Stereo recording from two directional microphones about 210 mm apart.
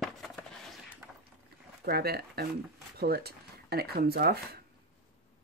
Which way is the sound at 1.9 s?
50° right (ahead or behind).